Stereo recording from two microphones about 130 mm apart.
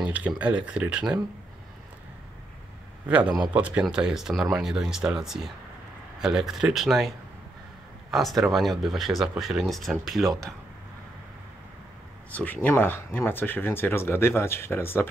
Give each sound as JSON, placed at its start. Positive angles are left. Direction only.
{"t": 0.0, "sound": "speech", "side_deg": -10}
{"t": 3.1, "sound": "speech", "side_deg": -10}
{"t": 8.1, "sound": "speech", "side_deg": 0}
{"t": 12.4, "sound": "speech", "side_deg": 15}